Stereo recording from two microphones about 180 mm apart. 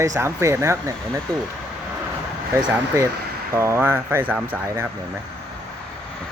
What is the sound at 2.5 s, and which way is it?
Speech, 15° right (ahead or behind).